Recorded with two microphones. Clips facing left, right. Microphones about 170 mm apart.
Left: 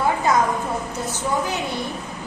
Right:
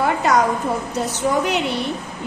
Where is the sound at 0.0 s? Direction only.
70° right (ahead or behind).